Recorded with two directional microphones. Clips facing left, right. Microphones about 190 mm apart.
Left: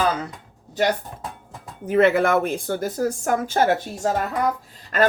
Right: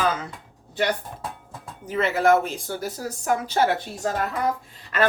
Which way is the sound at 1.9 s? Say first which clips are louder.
Left 3 dB; 55° left (ahead or behind).